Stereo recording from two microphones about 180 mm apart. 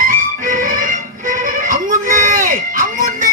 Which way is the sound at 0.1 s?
50° right (ahead or behind).